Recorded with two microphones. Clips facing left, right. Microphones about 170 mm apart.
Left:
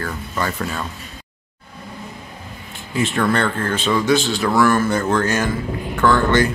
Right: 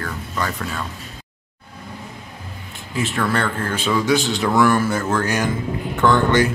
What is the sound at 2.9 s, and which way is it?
A man's voice, centre (ahead or behind).